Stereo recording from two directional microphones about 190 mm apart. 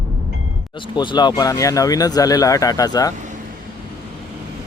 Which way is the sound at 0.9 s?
25° left (ahead or behind).